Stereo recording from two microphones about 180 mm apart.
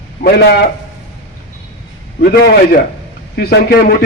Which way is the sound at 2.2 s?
60° left (ahead or behind).